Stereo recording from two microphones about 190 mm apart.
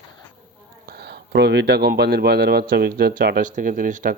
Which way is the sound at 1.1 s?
65° right (ahead or behind).